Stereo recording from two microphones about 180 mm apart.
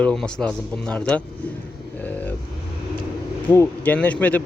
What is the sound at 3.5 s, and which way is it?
Speech, 10° left (ahead or behind).